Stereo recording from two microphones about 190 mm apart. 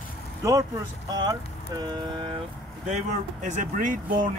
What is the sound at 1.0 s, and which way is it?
Speech, 20° right (ahead or behind).